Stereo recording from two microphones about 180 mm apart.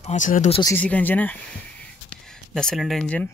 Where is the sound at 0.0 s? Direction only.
45° left (ahead or behind).